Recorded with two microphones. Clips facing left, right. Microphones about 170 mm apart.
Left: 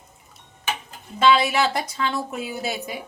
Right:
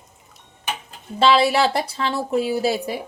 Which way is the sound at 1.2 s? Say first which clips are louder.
Right 2 dB; 35° right (ahead or behind).